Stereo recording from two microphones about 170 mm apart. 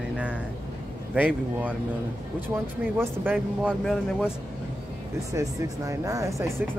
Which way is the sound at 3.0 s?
10° right (ahead or behind).